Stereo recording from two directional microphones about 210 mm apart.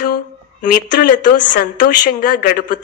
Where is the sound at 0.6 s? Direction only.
40° left (ahead or behind).